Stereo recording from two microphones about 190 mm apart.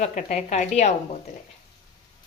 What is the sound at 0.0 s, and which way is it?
Speech, 40° left (ahead or behind).